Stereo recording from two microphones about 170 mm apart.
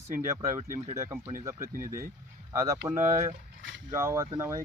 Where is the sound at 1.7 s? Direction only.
55° right (ahead or behind).